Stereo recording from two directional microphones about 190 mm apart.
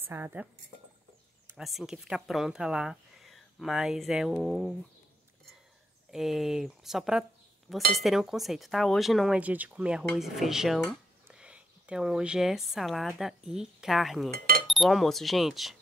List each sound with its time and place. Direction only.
0.0 s speech: 10° right (ahead or behind)
1.5 s speech: centre (ahead or behind)
6.1 s speech: centre (ahead or behind)
7.7 s chink: centre (ahead or behind)
8.0 s speech: centre (ahead or behind)
14.3 s speech: 50° right (ahead or behind)
14.7 s speech: centre (ahead or behind)